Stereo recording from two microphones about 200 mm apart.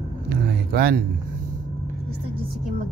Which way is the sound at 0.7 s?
45° right (ahead or behind).